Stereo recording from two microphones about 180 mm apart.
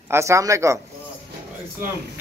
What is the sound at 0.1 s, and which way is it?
Speech, 15° right (ahead or behind).